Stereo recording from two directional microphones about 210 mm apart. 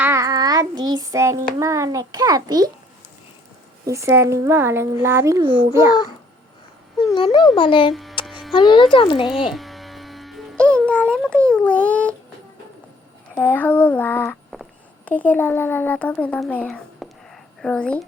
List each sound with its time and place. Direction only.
0.0 s child singing: 15° right (ahead or behind)
3.8 s a child's voice: 15° right (ahead or behind)
7.1 s a child's voice: 25° left (ahead or behind)
8.3 s a sound: centre (ahead or behind)
8.5 s a child's voice: 25° left (ahead or behind)
9.5 s electric shaver: centre (ahead or behind)
13.3 s speech: 10° left (ahead or behind)